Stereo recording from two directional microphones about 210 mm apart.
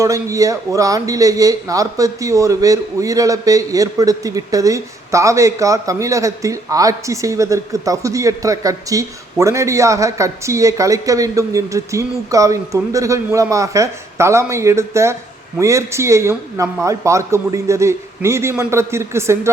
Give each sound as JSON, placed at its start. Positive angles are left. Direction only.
{"t": 0.0, "sound": "a man's voice", "side_deg": -15}